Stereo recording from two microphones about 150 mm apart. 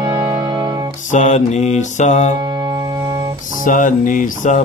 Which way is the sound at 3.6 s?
60° left (ahead or behind).